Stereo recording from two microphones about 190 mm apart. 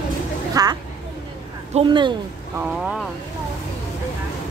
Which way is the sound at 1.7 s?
30° right (ahead or behind).